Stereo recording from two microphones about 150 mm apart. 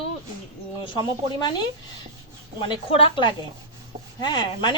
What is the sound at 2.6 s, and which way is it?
A woman's voice, 35° left (ahead or behind).